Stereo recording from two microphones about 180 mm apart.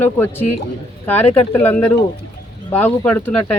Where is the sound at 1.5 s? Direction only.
10° left (ahead or behind).